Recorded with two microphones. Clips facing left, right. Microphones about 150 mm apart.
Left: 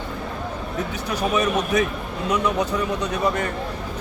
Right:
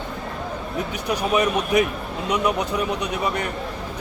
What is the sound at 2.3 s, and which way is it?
A man's voice, 15° right (ahead or behind).